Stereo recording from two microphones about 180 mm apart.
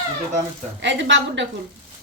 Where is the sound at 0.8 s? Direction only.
85° right.